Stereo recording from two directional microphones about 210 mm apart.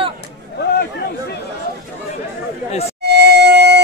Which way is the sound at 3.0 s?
50° right (ahead or behind).